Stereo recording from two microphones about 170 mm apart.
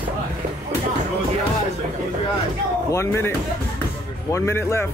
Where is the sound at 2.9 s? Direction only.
15° left (ahead or behind).